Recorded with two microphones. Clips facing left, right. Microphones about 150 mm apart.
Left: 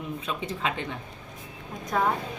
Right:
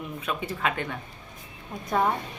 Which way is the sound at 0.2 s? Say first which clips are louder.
Right 4 dB; 60° right (ahead or behind).